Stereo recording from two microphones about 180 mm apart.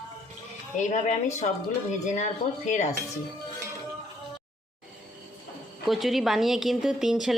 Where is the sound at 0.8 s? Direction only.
40° left (ahead or behind).